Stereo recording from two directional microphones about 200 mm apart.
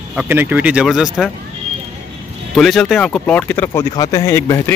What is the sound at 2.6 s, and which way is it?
Speech, centre (ahead or behind).